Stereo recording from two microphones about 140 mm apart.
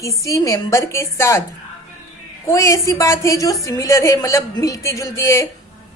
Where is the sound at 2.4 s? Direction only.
20° left (ahead or behind).